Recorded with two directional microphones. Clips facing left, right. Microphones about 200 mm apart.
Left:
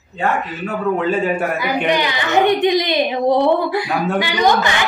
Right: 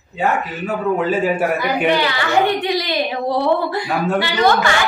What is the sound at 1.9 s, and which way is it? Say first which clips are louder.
A woman's voice: even; 15° left (ahead or behind).